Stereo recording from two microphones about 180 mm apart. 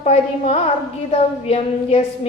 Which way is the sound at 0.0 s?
35° left (ahead or behind).